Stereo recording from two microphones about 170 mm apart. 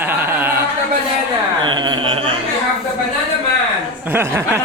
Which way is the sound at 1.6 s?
25° right (ahead or behind).